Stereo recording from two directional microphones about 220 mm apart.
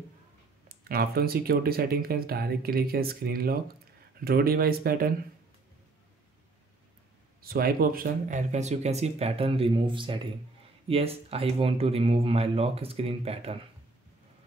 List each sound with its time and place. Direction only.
0.7 s speech: 45° right (ahead or behind)
7.4 s speech: 45° right (ahead or behind); by 13.6 s 25° right (ahead or behind)